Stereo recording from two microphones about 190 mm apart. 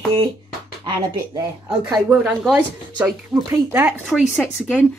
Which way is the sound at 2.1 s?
5° right (ahead or behind).